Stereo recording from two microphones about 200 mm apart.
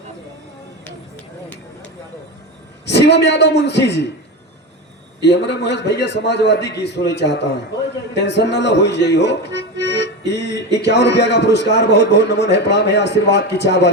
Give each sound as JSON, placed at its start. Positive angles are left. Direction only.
{"t": 2.8, "sound": "speech", "side_deg": 60}
{"t": 5.2, "sound": "speech", "side_deg": 60}